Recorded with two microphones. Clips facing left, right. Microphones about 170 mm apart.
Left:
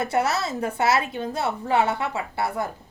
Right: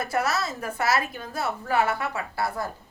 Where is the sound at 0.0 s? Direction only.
25° left (ahead or behind).